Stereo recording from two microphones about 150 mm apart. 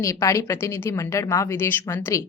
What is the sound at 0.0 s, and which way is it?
A woman's voice, 20° left (ahead or behind).